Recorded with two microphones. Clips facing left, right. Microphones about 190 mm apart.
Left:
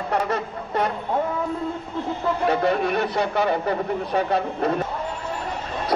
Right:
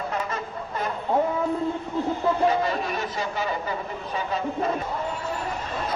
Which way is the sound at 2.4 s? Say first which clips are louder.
Left 2 dB; 65° left (ahead or behind).